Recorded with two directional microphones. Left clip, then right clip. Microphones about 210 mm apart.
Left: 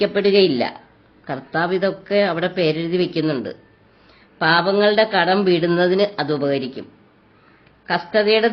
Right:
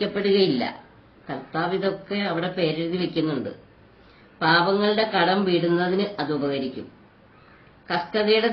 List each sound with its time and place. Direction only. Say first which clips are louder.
0.0 s a woman's voice: left 6 dB; 55° left (ahead or behind)
4.4 s speech: left 4 dB; 55° left (ahead or behind)
7.9 s speech: left 5 dB; 60° left (ahead or behind)